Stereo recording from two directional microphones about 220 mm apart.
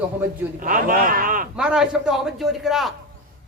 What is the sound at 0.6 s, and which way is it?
Speech, 40° right (ahead or behind).